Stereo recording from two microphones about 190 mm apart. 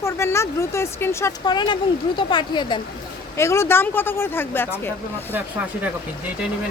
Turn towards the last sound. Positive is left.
turn(degrees=-10)  # may be behind; listen again after turning